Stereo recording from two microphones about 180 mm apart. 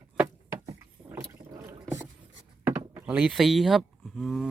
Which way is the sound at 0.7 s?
15° right (ahead or behind).